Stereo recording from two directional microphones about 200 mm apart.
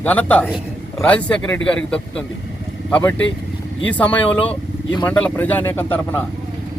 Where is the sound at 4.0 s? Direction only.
5° left (ahead or behind).